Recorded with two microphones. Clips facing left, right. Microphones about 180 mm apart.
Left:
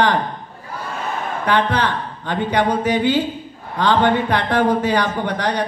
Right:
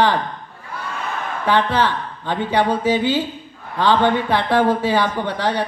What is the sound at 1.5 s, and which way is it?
A man's voice, 15° left (ahead or behind).